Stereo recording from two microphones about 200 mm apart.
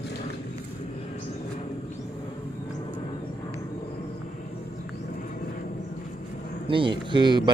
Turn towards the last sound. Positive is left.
turn(degrees=-25)  # may be behind; listen again after turning